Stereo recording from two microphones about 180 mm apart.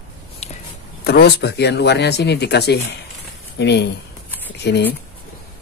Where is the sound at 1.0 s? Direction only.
65° left (ahead or behind).